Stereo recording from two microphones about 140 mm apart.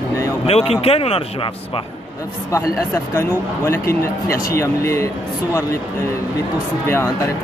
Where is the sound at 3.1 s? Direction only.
20° left (ahead or behind).